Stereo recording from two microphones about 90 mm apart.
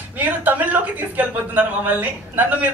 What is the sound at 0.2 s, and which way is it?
Speech, 20° right (ahead or behind).